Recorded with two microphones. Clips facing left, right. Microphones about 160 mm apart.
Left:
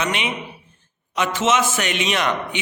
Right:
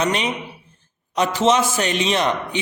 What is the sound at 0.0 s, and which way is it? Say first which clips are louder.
A man's voice: right 3 dB; 35° right (ahead or behind).